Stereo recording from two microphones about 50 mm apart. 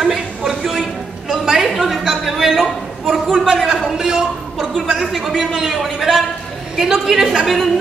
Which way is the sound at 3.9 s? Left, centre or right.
Centre.